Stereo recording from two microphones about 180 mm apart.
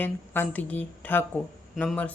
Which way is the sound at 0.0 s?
10° left (ahead or behind).